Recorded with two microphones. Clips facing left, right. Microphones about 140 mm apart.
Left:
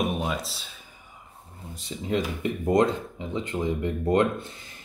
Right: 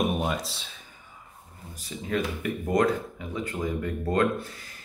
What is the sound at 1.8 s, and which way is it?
Speech, 25° left (ahead or behind).